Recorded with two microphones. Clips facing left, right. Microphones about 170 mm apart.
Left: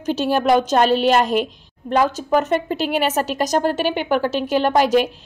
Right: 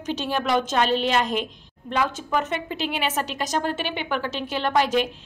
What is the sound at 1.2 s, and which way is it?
Speech, 5° left (ahead or behind).